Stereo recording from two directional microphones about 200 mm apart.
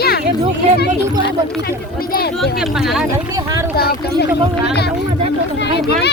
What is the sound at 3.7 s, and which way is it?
Speech, 50° left (ahead or behind).